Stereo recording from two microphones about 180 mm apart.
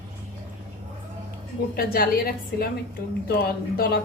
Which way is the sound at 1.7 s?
55° left (ahead or behind).